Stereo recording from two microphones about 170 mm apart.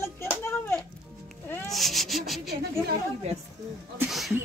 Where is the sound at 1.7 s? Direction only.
Centre (ahead or behind).